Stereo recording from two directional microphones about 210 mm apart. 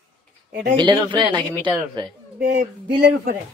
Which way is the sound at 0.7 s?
20° right (ahead or behind).